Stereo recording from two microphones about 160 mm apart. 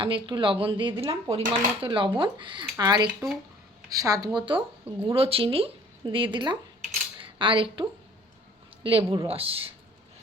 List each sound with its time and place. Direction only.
0.0 s a woman's voice: 30° right (ahead or behind)